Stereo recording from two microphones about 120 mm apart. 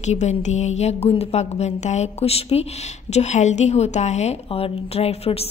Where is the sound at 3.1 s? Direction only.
70° left (ahead or behind).